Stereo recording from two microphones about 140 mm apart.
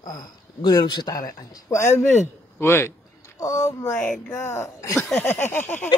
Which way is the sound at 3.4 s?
25° left (ahead or behind).